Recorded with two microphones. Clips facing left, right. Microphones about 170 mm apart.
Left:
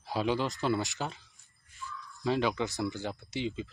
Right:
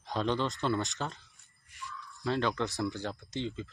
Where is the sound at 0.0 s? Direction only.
5° left (ahead or behind).